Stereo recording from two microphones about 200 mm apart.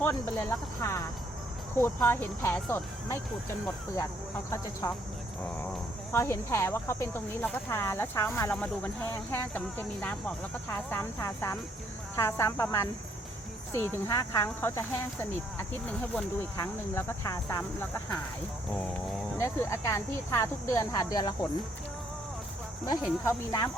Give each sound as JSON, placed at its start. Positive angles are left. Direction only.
{"t": 0.0, "sound": "speech", "side_deg": 10}
{"t": 4.5, "sound": "speech", "side_deg": 15}
{"t": 6.1, "sound": "speech", "side_deg": 10}
{"t": 19.4, "sound": "speech", "side_deg": 15}
{"t": 22.9, "sound": "speech", "side_deg": 15}